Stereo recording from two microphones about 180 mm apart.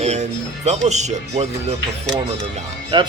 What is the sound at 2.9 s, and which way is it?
Speech, 30° right (ahead or behind).